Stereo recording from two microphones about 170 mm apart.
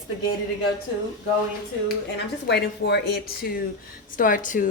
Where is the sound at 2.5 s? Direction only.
85° left; by 3.6 s 70° left (ahead or behind).